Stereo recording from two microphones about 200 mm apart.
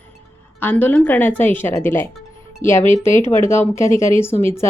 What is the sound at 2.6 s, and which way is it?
Speech, 40° left (ahead or behind).